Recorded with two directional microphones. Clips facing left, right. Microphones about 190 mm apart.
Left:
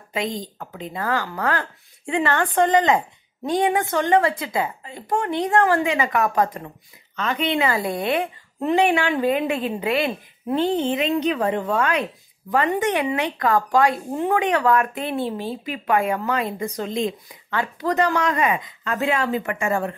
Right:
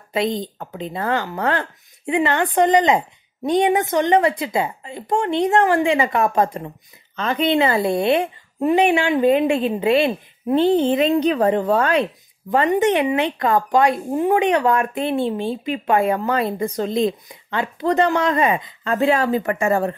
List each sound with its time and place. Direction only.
0.1 s a woman's voice: 35° right (ahead or behind)
12.4 s a woman's voice: 25° right (ahead or behind)
17.5 s speech: 20° right (ahead or behind)